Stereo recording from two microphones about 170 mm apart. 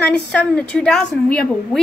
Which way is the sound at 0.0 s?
10° left (ahead or behind).